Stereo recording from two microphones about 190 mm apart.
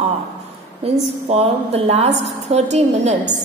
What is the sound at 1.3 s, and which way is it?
A woman's voice, 35° right (ahead or behind).